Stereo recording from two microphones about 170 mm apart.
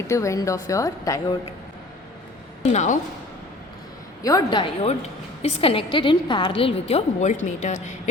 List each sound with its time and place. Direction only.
0.1 s a woman's voice: 20° left (ahead or behind)
2.7 s speech: 45° left (ahead or behind)
4.2 s a woman's voice: 20° left (ahead or behind); by 7.9 s 45° left (ahead or behind)